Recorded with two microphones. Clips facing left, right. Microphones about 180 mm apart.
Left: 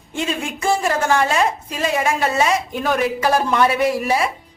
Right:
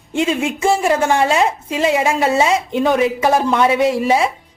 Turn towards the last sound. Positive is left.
turn(degrees=-25)  # may be behind; listen again after turning